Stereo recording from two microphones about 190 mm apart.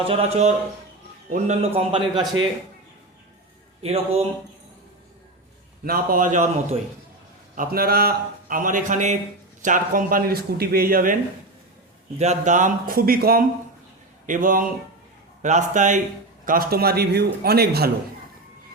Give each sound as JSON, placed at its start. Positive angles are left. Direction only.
{"t": 0.1, "sound": "a man's voice", "side_deg": -35}
{"t": 3.8, "sound": "a man's voice", "side_deg": -30}
{"t": 5.8, "sound": "speech", "side_deg": -50}
{"t": 12.2, "sound": "a man's voice", "side_deg": -40}
{"t": 16.5, "sound": "a man's voice", "side_deg": -50}